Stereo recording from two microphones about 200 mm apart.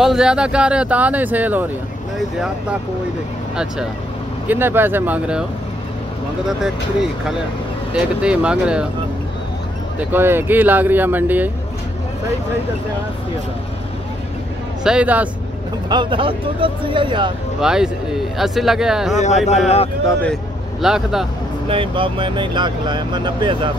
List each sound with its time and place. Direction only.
0.0 s speech: 5° right (ahead or behind)
4.5 s speech: 10° right (ahead or behind)
6.4 s speech: centre (ahead or behind)
9.9 s speech: 10° right (ahead or behind)
14.8 s speech: 5° right (ahead or behind)
15.9 s speech: 25° right (ahead or behind)
17.6 s speech: 5° right (ahead or behind)
20.1 s speech: 5° left (ahead or behind)
21.6 s speech: 25° right (ahead or behind)